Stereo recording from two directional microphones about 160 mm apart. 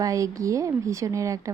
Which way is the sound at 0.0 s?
20° right (ahead or behind).